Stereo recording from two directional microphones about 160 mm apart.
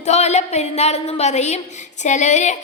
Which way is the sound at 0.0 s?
45° left (ahead or behind).